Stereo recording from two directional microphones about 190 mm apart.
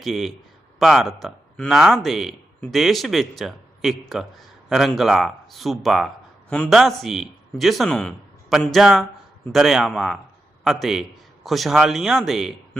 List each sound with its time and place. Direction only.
0.0 s a man's voice: centre (ahead or behind)